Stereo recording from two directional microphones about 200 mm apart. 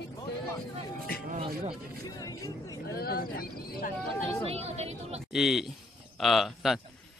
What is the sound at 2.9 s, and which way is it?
Speech, 50° left (ahead or behind).